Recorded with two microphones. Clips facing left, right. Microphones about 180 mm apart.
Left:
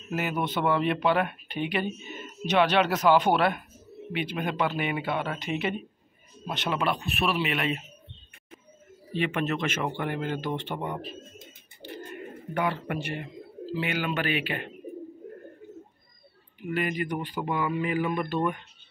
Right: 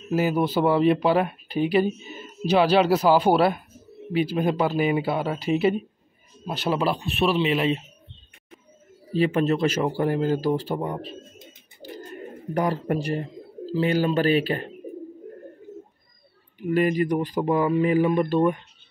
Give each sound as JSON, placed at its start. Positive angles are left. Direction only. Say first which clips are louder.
{"t": 0.1, "sound": "speech", "louder": "right 7 dB", "side_deg": -30}
{"t": 9.1, "sound": "speech", "louder": "right 7 dB", "side_deg": -35}
{"t": 16.5, "sound": "speech", "louder": "right 8 dB", "side_deg": -40}